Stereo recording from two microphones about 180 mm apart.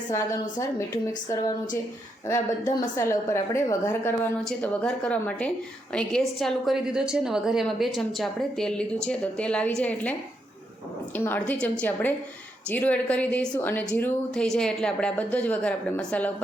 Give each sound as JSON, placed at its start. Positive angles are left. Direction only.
{"t": 0.1, "sound": "a woman's voice", "side_deg": 15}
{"t": 3.0, "sound": "a woman's voice", "side_deg": 15}
{"t": 11.2, "sound": "a woman's voice", "side_deg": 10}